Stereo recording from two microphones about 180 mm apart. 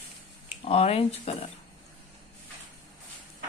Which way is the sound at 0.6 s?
35° left (ahead or behind).